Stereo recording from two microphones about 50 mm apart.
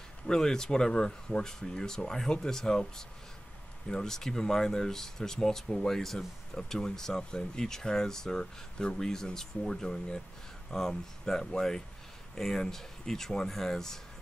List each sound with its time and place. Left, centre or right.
0.3 s speech: centre